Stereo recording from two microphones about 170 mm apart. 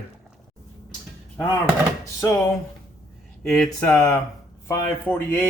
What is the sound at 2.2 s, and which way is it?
Speech, 15° left (ahead or behind).